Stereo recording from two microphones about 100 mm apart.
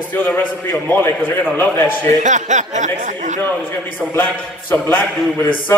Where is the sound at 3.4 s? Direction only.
20° left (ahead or behind).